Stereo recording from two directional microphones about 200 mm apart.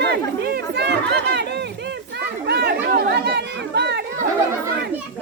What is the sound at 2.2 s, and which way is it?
Chatter, 55° right (ahead or behind).